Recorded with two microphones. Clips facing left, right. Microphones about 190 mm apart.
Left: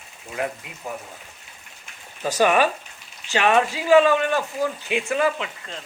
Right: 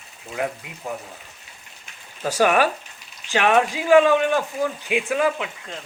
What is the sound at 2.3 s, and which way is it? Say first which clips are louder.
Speech: even; 10° right (ahead or behind).